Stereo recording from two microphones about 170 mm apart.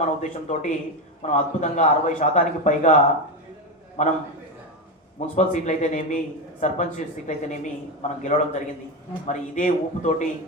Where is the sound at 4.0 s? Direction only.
45° left (ahead or behind).